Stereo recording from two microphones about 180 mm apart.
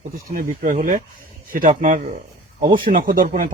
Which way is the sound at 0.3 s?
50° right (ahead or behind).